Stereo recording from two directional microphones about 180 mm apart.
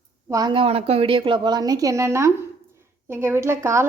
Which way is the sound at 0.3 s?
20° right (ahead or behind).